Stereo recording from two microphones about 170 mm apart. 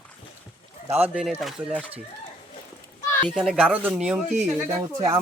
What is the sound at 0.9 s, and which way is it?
Speech, 10° right (ahead or behind).